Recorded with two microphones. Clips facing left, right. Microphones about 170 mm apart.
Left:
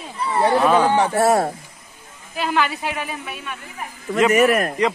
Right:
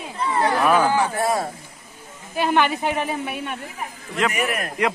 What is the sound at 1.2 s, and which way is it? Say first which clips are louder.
Speech: left 6 dB; 65° left (ahead or behind).